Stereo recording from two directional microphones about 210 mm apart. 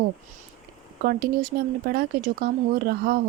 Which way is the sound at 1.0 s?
45° right (ahead or behind).